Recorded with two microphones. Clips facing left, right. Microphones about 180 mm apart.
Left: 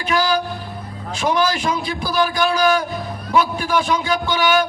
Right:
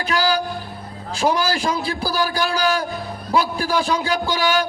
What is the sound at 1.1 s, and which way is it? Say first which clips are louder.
A man's voice: left 1 dB; 35° right (ahead or behind).